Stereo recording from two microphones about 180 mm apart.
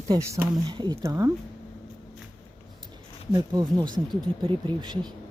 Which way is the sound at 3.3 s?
20° right (ahead or behind).